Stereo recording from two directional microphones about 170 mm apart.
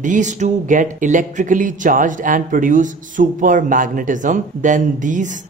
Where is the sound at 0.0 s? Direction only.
45° right (ahead or behind).